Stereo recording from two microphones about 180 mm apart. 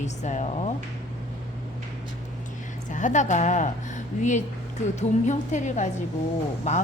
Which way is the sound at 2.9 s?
45° left (ahead or behind).